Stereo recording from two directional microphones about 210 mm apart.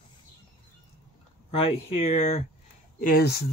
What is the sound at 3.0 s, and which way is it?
Speech, 45° left (ahead or behind).